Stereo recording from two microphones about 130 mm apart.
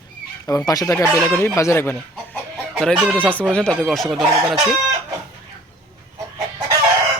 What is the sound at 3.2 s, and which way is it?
Speech, 10° left (ahead or behind).